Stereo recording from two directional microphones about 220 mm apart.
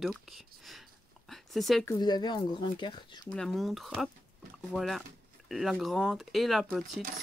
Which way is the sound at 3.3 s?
Centre (ahead or behind).